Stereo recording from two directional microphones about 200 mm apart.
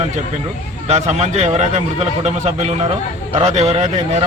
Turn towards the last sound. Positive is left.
turn(degrees=-30)  # may be behind; listen again after turning